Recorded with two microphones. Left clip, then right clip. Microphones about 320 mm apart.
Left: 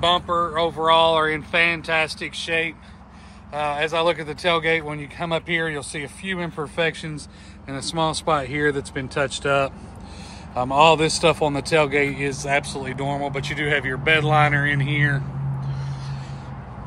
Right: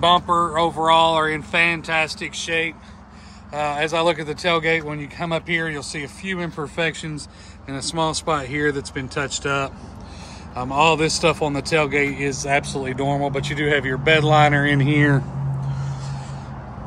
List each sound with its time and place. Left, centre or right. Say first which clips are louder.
0.0 s speech: right 3 dB; centre